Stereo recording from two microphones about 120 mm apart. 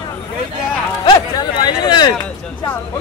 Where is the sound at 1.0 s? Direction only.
35° left (ahead or behind).